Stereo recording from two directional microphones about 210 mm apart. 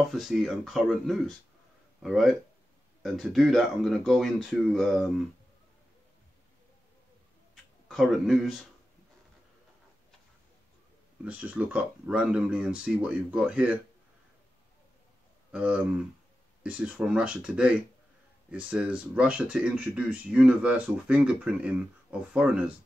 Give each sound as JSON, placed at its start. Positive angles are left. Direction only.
{"t": 0.0, "sound": "speech", "side_deg": 0}
{"t": 7.9, "sound": "speech", "side_deg": 0}
{"t": 11.2, "sound": "speech", "side_deg": -5}
{"t": 15.5, "sound": "speech", "side_deg": -5}